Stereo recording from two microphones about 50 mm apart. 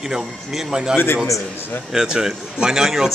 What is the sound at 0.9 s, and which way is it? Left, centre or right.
Speech, left.